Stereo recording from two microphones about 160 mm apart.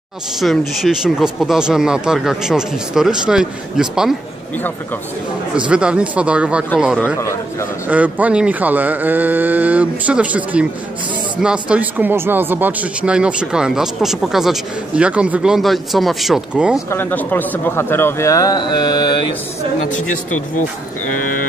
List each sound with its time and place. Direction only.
0.4 s speech: centre (ahead or behind)
5.7 s speech: 5° right (ahead or behind)
7.9 s speech: 10° right (ahead or behind)
16.9 s a man's voice: 10° left (ahead or behind)